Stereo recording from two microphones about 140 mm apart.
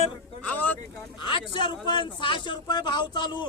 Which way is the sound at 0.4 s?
10° left (ahead or behind).